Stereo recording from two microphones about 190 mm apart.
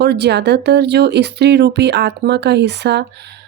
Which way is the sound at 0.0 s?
60° right (ahead or behind).